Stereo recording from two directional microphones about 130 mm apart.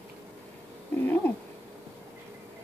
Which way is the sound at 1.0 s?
15° left (ahead or behind).